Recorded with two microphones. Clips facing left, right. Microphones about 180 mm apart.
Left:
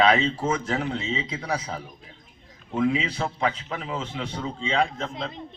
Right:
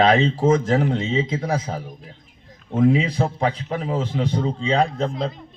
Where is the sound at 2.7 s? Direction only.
45° right (ahead or behind).